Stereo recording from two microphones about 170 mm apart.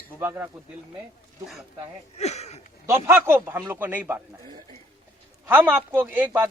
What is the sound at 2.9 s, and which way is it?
A man's voice, 15° right (ahead or behind).